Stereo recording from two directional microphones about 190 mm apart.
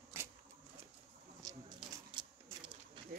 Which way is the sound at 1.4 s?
20° right (ahead or behind).